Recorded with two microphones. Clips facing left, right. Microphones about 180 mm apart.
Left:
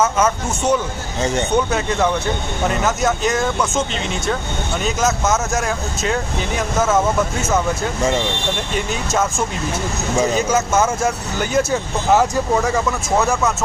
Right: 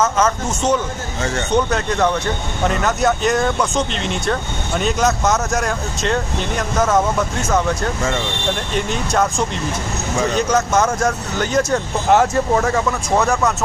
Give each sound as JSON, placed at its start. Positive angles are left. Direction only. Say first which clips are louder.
{"t": 0.0, "sound": "speech", "louder": "even", "side_deg": 10}
{"t": 1.7, "sound": "speech", "louder": "even", "side_deg": 5}
{"t": 10.2, "sound": "speech", "louder": "right 3 dB", "side_deg": 5}